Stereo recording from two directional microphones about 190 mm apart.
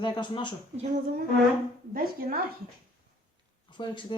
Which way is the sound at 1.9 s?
50° right (ahead or behind).